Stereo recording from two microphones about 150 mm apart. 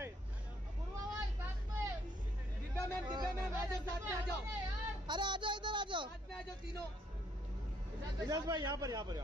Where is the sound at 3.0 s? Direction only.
30° right (ahead or behind).